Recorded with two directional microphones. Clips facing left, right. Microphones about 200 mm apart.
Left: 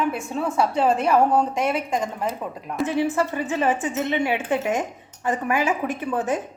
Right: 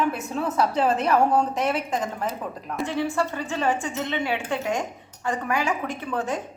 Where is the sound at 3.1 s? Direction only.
20° left (ahead or behind).